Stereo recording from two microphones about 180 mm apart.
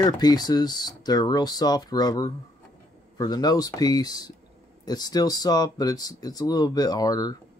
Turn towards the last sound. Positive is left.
turn(degrees=20)  # may be behind; listen again after turning